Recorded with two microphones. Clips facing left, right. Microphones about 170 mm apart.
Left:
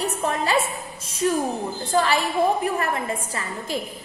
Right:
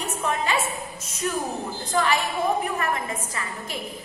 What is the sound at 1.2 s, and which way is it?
A woman's voice, 30° left (ahead or behind).